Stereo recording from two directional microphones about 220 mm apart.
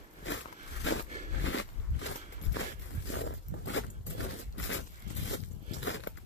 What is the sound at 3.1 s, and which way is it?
Zipper, 60° left (ahead or behind).